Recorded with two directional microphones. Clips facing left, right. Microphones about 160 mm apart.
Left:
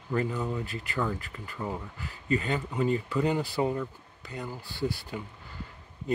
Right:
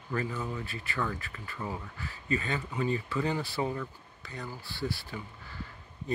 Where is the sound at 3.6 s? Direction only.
5° left (ahead or behind).